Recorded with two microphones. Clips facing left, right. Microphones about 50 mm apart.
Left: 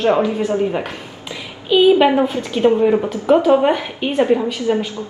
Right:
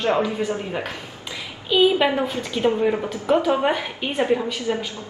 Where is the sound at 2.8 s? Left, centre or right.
Centre.